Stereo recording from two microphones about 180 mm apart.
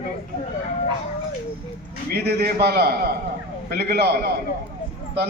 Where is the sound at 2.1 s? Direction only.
65° right (ahead or behind).